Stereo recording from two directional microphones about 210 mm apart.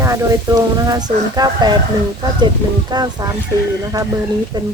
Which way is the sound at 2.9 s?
20° right (ahead or behind).